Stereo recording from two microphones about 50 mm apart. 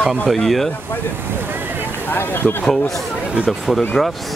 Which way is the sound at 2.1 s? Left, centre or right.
Left.